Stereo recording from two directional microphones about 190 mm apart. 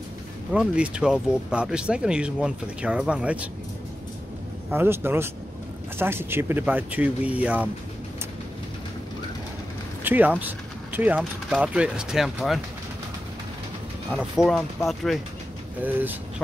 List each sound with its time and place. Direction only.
0.5 s speech: 5° right (ahead or behind)
4.6 s speech: 10° right (ahead or behind)
10.0 s speech: 10° right (ahead or behind)
14.1 s speech: centre (ahead or behind)
15.8 s speech: 10° right (ahead or behind)